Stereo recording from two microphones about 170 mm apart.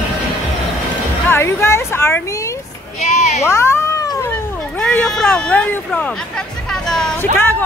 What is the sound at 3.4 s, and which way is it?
Cat, 15° left (ahead or behind).